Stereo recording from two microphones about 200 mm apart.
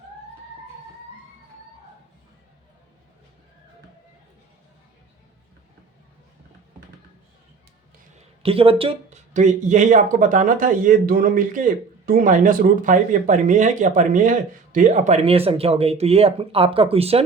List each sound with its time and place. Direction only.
8.4 s speech: 30° right (ahead or behind)